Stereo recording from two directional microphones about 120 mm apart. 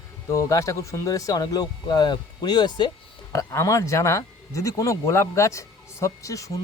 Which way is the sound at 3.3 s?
25° left (ahead or behind).